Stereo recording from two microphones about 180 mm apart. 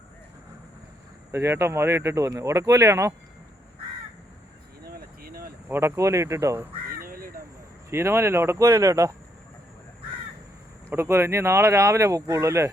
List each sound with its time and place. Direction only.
1.3 s speech: 15° right (ahead or behind)
4.8 s a sound: 55° right (ahead or behind)
5.6 s speech: 15° right (ahead or behind)
7.0 s crow: 50° right (ahead or behind)
7.9 s speech: 15° right (ahead or behind)
10.8 s speech: 15° right (ahead or behind)